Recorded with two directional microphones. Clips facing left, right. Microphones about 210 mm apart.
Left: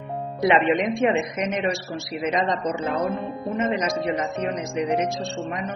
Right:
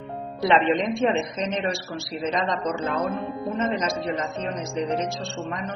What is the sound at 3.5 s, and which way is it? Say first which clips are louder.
Speech: left 2 dB; 15° left (ahead or behind).